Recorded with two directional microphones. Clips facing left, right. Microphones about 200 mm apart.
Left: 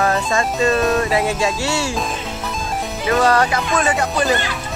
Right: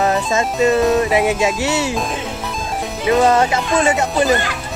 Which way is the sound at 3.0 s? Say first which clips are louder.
Right 3 dB; 20° right (ahead or behind).